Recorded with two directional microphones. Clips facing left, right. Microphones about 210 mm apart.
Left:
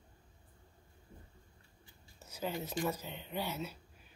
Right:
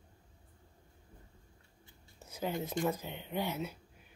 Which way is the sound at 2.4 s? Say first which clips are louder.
Right 3 dB; 20° right (ahead or behind).